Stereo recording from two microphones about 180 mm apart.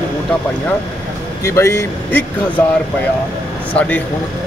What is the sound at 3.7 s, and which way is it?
Speech, 10° left (ahead or behind).